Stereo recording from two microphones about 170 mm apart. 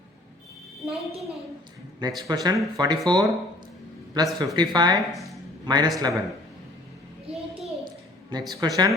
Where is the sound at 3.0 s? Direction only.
25° right (ahead or behind).